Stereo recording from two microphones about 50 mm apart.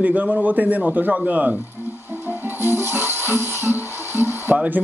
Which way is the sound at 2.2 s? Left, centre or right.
Right.